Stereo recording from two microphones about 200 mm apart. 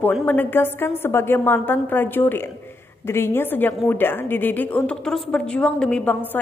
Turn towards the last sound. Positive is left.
turn(degrees=10)  # may be behind; listen again after turning